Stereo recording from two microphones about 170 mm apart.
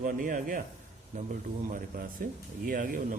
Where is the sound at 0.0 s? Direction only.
50° right (ahead or behind).